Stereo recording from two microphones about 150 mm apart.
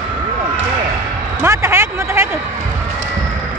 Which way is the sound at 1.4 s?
15° right (ahead or behind).